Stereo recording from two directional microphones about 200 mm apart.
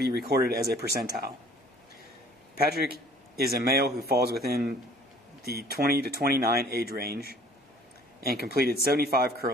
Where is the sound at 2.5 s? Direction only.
50° right (ahead or behind).